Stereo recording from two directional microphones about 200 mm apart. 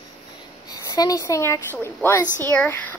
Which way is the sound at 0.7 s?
20° left (ahead or behind).